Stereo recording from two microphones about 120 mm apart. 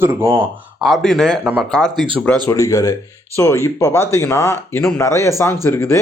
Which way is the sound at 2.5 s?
30° left (ahead or behind).